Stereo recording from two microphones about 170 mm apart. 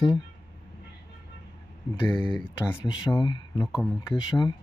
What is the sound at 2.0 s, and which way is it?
Speech, 10° left (ahead or behind).